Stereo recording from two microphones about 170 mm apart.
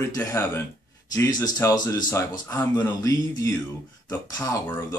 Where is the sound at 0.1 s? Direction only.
15° left (ahead or behind).